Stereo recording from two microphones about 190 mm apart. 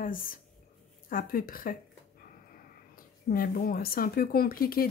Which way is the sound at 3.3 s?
50° left (ahead or behind).